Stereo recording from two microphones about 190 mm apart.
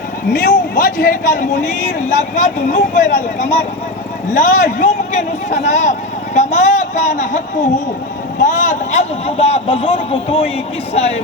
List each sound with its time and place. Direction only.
0.3 s speech: 50° left (ahead or behind)